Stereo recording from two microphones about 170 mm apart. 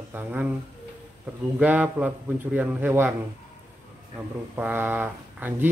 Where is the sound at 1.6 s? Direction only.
10° right (ahead or behind).